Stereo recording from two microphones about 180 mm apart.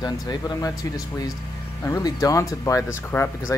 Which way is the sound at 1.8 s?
20° left (ahead or behind).